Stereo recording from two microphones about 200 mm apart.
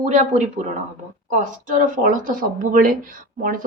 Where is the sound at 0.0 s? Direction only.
35° right (ahead or behind).